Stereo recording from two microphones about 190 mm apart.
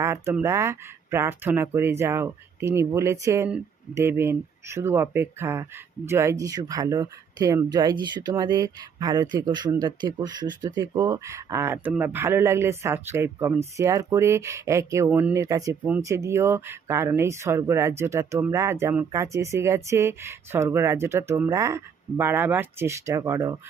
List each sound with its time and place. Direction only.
0.0 s speech: 15° right (ahead or behind)